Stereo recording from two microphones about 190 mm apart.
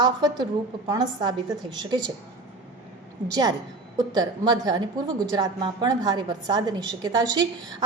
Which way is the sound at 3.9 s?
20° right (ahead or behind).